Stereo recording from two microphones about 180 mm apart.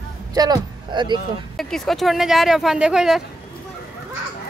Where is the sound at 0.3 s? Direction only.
20° right (ahead or behind).